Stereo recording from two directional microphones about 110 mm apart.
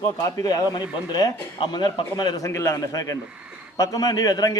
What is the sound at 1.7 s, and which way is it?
A man's voice, 40° left (ahead or behind).